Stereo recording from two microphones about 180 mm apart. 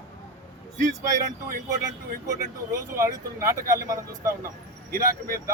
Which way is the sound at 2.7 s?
15° right (ahead or behind).